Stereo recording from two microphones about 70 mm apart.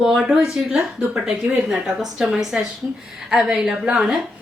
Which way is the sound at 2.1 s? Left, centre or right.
Centre.